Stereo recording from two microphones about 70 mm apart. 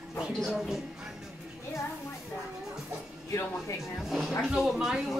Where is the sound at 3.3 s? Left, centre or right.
Left.